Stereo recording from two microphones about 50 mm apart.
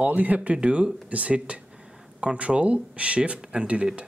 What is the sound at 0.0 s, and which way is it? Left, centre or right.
Speech, right.